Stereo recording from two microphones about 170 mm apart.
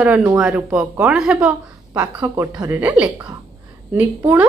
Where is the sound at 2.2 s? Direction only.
20° right (ahead or behind).